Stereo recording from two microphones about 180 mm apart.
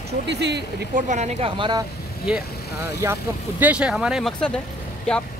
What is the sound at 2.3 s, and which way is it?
Speech, 5° right (ahead or behind).